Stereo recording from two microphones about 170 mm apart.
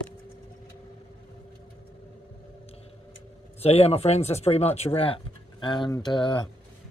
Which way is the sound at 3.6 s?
35° left (ahead or behind).